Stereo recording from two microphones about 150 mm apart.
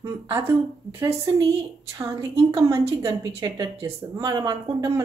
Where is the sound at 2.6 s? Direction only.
20° right (ahead or behind).